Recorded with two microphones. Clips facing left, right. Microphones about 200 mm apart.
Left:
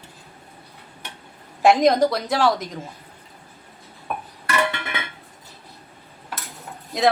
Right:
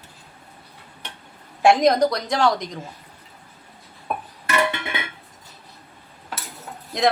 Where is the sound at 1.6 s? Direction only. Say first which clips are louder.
Even; centre (ahead or behind).